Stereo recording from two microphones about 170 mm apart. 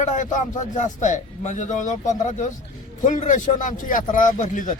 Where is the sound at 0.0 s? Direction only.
45° left (ahead or behind).